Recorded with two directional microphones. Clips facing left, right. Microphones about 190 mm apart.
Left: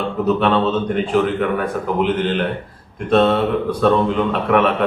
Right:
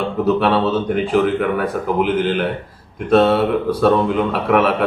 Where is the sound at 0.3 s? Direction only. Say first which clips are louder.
Even; 5° right (ahead or behind).